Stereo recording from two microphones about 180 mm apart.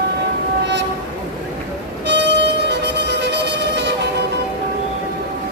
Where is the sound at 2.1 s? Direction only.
75° right (ahead or behind).